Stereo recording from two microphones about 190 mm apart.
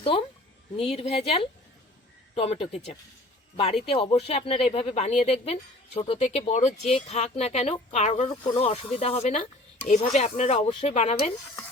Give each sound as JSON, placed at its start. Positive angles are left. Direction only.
{"t": 0.0, "sound": "a woman's voice", "side_deg": 30}